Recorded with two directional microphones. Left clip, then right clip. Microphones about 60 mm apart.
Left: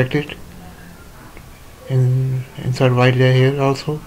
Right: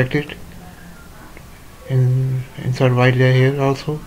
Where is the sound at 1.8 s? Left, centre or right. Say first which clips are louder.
Even; centre.